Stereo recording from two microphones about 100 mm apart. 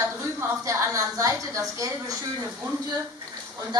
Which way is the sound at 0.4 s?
35° right (ahead or behind).